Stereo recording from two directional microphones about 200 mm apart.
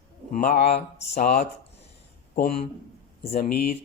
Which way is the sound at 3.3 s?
45° left (ahead or behind).